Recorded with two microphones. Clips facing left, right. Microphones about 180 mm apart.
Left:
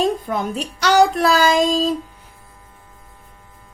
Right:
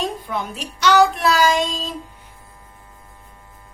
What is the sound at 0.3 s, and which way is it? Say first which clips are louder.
Speech: left 4 dB; 40° left (ahead or behind).